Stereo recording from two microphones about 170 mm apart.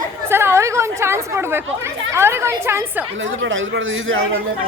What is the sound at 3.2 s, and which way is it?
Speech, 90° right.